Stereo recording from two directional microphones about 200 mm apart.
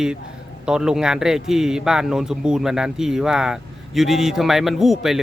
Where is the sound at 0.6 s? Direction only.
5° right (ahead or behind).